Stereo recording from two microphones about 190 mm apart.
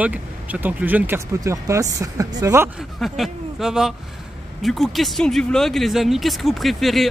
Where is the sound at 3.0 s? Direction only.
Centre (ahead or behind).